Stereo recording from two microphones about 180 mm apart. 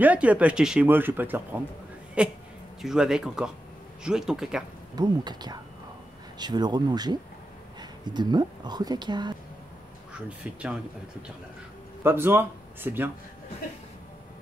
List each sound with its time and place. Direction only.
0.0 s speech: 10° right (ahead or behind)
4.9 s speech: 25° right (ahead or behind)
10.1 s speech: 5° right (ahead or behind)
12.0 s speech: 10° right (ahead or behind)